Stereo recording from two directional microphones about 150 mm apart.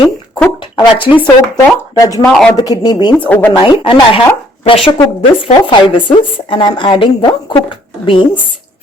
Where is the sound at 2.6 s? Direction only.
25° left (ahead or behind).